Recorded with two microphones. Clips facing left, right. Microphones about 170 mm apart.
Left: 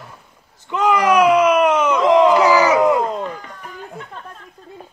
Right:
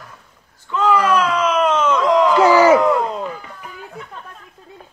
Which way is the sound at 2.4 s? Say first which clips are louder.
Right 3 dB; 25° right (ahead or behind).